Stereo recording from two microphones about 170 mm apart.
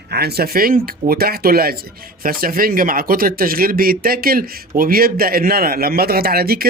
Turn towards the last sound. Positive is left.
turn(degrees=-65)  # may be behind; listen again after turning